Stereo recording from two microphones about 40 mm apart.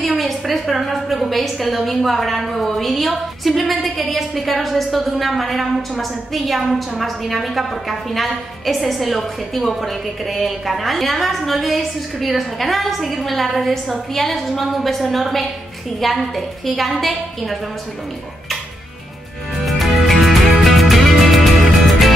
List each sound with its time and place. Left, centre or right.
0.2 s a woman's voice: centre
19.6 s music: centre